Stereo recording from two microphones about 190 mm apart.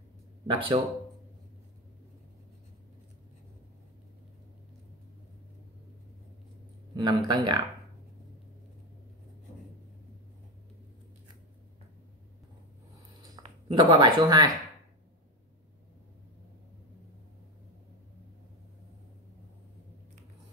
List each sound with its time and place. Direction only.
0.5 s speech: 30° right (ahead or behind)
7.0 s speech: 25° right (ahead or behind)
13.1 s a sound: 20° right (ahead or behind)